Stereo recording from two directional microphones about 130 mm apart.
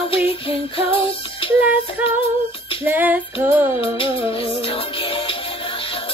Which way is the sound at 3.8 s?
45° left (ahead or behind).